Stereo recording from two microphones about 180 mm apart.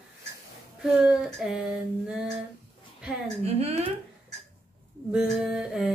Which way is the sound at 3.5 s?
35° right (ahead or behind).